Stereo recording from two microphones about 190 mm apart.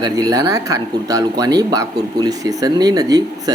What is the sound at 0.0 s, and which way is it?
Speech, 20° right (ahead or behind).